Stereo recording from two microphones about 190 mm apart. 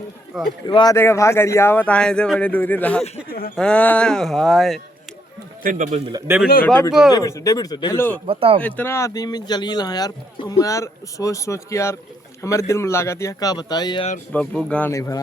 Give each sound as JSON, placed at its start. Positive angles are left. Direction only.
{"t": 0.3, "sound": "speech", "side_deg": 0}
{"t": 0.7, "sound": "speech", "side_deg": 25}
{"t": 0.9, "sound": "speech", "side_deg": 15}
{"t": 5.6, "sound": "speech", "side_deg": -40}
{"t": 6.1, "sound": "speech", "side_deg": -15}
{"t": 7.1, "sound": "speech", "side_deg": 15}
{"t": 8.3, "sound": "speech", "side_deg": -30}
{"t": 8.6, "sound": "speech", "side_deg": 10}
{"t": 14.3, "sound": "speech", "side_deg": 5}